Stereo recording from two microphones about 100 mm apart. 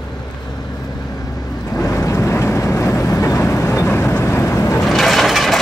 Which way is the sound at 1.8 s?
30° left (ahead or behind).